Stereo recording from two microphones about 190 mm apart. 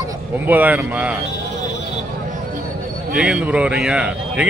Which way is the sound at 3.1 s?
5° right (ahead or behind).